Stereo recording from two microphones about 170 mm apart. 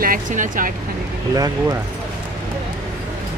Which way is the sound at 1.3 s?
20° right (ahead or behind).